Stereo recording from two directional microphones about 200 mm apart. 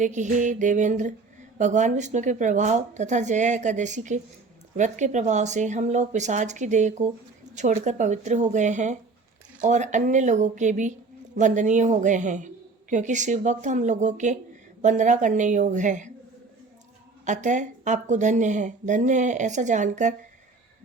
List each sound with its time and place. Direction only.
0.0 s speech: 40° right (ahead or behind)
17.2 s speech: 35° right (ahead or behind)